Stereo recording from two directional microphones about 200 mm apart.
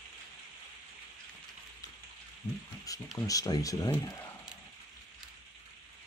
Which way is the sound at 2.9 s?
15° left (ahead or behind).